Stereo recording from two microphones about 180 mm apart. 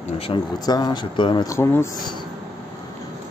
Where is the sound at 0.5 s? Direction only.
20° left (ahead or behind).